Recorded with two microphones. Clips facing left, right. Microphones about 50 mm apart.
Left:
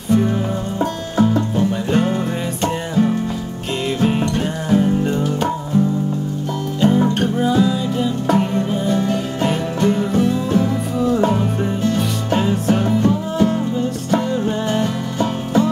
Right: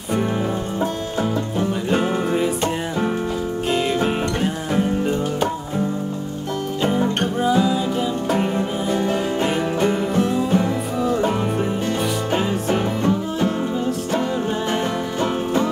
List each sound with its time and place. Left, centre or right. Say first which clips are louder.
0.1 s music: left 5 dB; centre
1.9 s music: left 1 dB; centre
7.4 s music: even; centre
11.8 s music: left 2 dB; centre
14.7 s music: left 2 dB; centre